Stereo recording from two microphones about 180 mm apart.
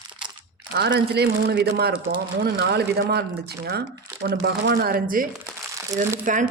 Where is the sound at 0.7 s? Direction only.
65° right (ahead or behind).